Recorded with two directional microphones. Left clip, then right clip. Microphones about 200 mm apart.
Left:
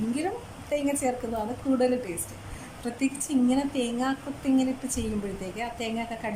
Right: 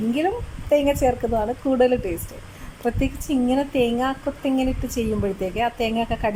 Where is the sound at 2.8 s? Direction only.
5° right (ahead or behind).